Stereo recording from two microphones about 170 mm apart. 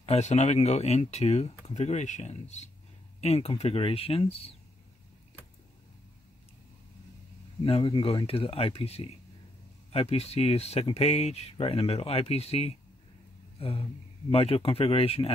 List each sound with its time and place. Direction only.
0.0 s speech: 40° left (ahead or behind)
7.6 s speech: 30° left (ahead or behind)
13.6 s a sound: 35° left (ahead or behind)
14.3 s speech: 35° left (ahead or behind)